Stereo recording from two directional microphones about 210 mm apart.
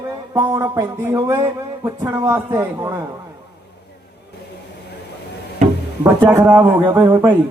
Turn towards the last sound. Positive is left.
turn(degrees=-15)  # may be behind; listen again after turning